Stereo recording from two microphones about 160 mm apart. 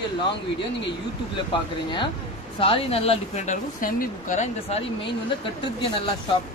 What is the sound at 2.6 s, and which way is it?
Speech, 35° left (ahead or behind).